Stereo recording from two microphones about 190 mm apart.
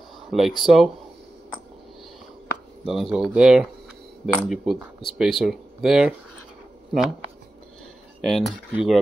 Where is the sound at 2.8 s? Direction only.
Centre (ahead or behind).